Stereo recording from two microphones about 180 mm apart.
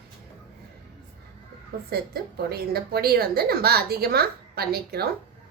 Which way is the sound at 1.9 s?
60° right (ahead or behind).